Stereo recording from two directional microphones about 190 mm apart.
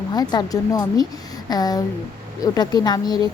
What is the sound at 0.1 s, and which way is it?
A woman's voice, 20° left (ahead or behind).